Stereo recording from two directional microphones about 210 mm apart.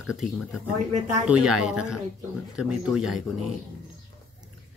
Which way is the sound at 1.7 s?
5° right (ahead or behind).